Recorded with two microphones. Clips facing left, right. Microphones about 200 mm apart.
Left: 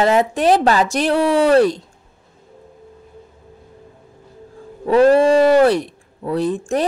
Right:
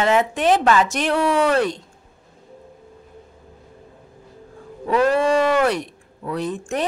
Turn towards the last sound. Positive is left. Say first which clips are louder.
# left 5 dB
turn(degrees=35)  # may be behind; listen again after turning